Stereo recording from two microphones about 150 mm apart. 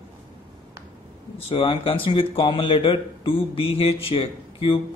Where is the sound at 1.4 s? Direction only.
40° left (ahead or behind).